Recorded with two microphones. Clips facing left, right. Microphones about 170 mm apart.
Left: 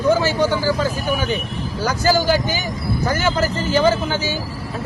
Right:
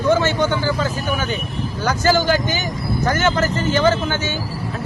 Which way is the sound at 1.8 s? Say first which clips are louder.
Even; 10° left (ahead or behind).